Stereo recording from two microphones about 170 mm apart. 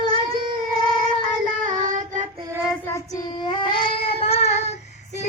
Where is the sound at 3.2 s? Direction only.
25° left (ahead or behind).